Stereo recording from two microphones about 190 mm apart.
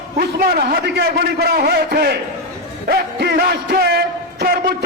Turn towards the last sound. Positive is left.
turn(degrees=-55)  # may be behind; listen again after turning